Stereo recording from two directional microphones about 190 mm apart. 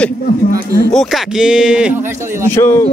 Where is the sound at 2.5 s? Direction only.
15° left (ahead or behind).